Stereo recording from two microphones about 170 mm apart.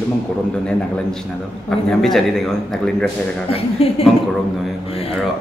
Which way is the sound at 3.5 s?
35° left (ahead or behind).